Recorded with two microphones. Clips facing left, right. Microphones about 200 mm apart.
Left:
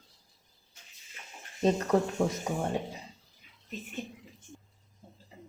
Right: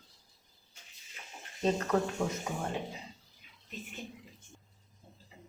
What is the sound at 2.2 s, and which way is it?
Speech, 15° left (ahead or behind).